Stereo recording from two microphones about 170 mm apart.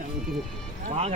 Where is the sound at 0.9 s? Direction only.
40° right (ahead or behind).